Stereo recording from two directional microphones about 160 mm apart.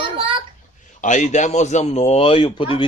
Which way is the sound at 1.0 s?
50° left (ahead or behind).